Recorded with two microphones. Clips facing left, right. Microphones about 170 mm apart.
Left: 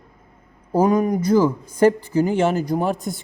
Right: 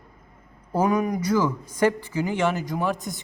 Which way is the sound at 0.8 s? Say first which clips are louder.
Left 5 dB; 30° left (ahead or behind).